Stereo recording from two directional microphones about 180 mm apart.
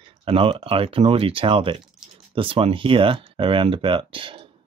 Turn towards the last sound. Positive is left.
turn(degrees=-30)  # may be behind; listen again after turning